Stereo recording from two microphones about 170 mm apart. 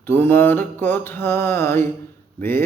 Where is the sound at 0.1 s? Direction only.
10° left (ahead or behind).